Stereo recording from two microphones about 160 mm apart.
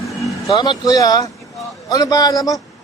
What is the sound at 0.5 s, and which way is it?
Speech, 30° left (ahead or behind).